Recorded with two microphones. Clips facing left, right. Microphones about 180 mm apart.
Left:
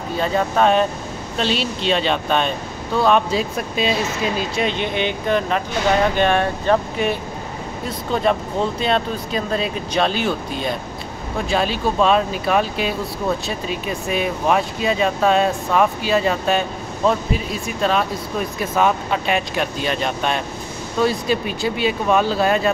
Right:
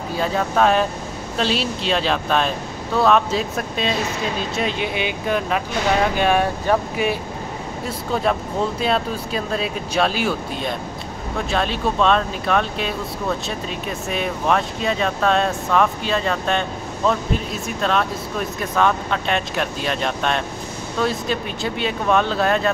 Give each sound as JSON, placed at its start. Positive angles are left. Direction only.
{"t": 0.2, "sound": "speech", "side_deg": 0}